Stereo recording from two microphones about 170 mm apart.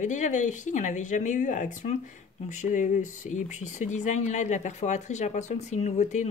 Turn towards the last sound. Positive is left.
turn(degrees=45)  # may be behind; listen again after turning